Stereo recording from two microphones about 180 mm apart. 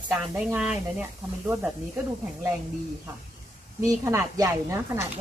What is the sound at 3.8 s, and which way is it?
Speech, 15° right (ahead or behind).